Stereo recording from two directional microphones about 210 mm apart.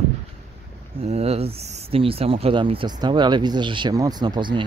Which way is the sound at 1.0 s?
30° right (ahead or behind).